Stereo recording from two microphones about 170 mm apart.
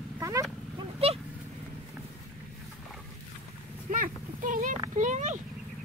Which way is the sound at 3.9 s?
50° right (ahead or behind).